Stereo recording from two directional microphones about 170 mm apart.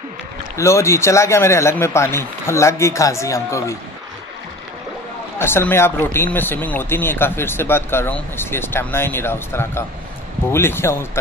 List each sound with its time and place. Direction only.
0.6 s speech: 15° left (ahead or behind)
5.4 s speech: 15° left (ahead or behind)